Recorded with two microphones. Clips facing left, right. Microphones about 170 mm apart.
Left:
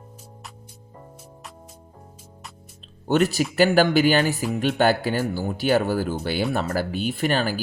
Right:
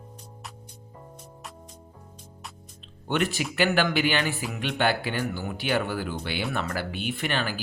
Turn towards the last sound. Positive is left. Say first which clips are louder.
# left 6 dB
turn(degrees=40)  # may be behind; listen again after turning